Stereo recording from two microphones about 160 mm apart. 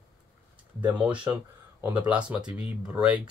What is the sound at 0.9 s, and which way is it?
Speech, 5° right (ahead or behind).